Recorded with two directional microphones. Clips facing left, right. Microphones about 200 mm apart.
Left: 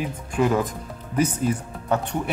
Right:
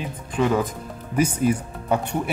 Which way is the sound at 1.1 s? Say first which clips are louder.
Right 2 dB; 10° right (ahead or behind).